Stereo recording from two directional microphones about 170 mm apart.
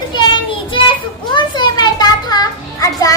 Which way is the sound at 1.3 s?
25° left (ahead or behind).